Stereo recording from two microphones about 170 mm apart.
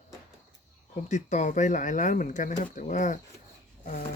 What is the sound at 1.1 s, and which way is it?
Speech, 45° left (ahead or behind).